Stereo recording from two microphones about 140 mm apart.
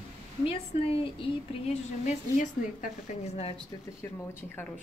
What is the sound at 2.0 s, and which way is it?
Speech, 65° left (ahead or behind).